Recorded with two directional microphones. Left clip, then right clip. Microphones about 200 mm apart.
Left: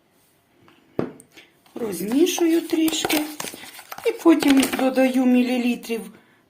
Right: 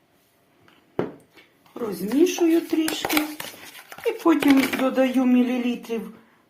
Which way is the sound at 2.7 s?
35° left (ahead or behind).